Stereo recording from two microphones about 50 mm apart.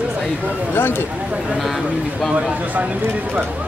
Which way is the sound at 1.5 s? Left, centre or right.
Centre.